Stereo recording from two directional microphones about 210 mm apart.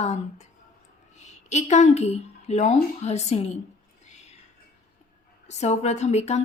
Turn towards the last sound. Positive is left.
turn(degrees=30)  # may be behind; listen again after turning